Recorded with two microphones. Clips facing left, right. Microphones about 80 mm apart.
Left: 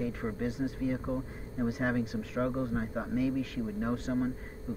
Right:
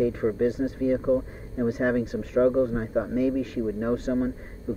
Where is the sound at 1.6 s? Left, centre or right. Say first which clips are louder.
Right 7 dB; centre.